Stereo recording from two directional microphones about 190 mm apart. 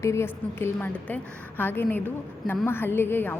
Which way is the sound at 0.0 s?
15° left (ahead or behind).